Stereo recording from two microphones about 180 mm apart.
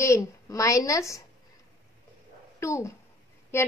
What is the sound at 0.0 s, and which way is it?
A woman's voice, 15° left (ahead or behind).